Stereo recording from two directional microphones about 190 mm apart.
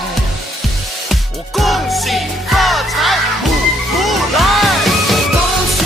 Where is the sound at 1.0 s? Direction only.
Centre (ahead or behind).